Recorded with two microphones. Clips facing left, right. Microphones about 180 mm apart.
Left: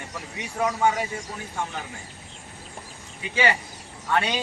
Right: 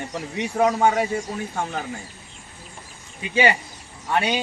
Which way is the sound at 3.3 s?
20° right (ahead or behind).